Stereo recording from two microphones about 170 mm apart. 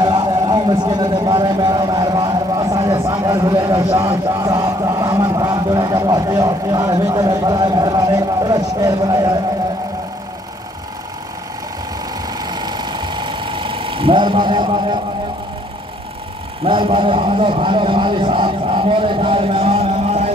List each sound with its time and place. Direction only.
0.0 s speech: 25° right (ahead or behind)
12.4 s a sound: 25° right (ahead or behind)
16.6 s a man's voice: 30° right (ahead or behind)